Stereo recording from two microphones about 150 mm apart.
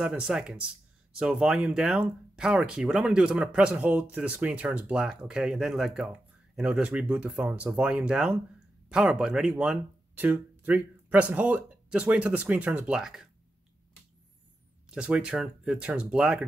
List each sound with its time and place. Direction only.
0.0 s speech: 5° right (ahead or behind)
14.9 s speech: 5° right (ahead or behind)